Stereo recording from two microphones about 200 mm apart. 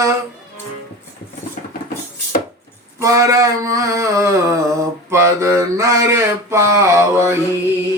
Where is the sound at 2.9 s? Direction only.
15° right (ahead or behind).